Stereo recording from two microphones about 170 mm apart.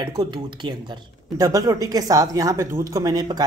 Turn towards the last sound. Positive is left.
turn(degrees=-25)  # may be behind; listen again after turning